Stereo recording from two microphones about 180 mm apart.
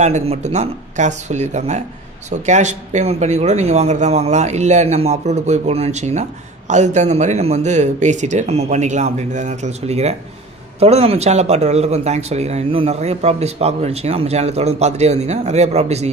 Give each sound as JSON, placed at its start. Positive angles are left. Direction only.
{"t": 0.0, "sound": "a man's voice", "side_deg": -35}